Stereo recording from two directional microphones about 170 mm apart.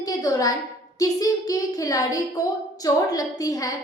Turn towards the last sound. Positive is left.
turn(degrees=20)  # may be behind; listen again after turning